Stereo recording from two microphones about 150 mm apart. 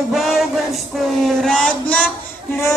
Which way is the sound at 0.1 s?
Centre (ahead or behind).